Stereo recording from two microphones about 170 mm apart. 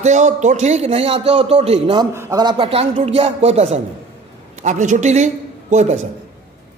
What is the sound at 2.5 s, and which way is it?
A man's voice, 35° right (ahead or behind).